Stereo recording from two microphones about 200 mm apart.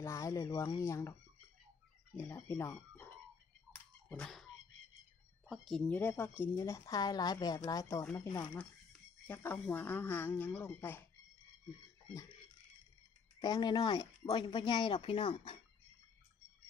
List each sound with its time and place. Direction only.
0.0 s speech: 15° left (ahead or behind)
2.1 s speech: 15° left (ahead or behind)
4.1 s a sound: centre (ahead or behind)
5.5 s speech: centre (ahead or behind)
13.4 s speech: 20° left (ahead or behind)